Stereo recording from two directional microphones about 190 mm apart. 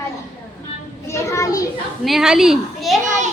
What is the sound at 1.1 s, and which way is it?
Children playing, 15° left (ahead or behind).